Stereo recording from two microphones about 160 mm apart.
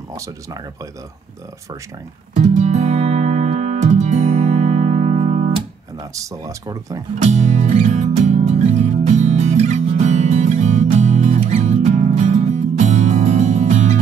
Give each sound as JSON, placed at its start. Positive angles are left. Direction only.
{"t": 2.3, "sound": "music", "side_deg": -45}
{"t": 6.1, "sound": "speech", "side_deg": -20}
{"t": 7.2, "sound": "music", "side_deg": -45}